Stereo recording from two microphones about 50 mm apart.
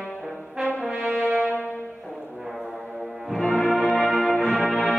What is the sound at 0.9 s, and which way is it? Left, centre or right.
Brass instrument, right.